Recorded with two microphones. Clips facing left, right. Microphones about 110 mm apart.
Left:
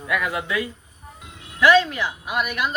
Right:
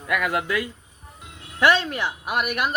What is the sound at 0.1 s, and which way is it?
Speech, 55° right (ahead or behind).